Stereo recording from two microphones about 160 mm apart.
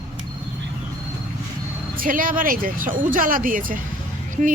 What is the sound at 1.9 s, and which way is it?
Speech, 60° right (ahead or behind).